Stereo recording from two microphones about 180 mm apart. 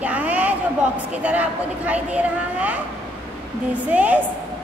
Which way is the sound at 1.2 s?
10° right (ahead or behind).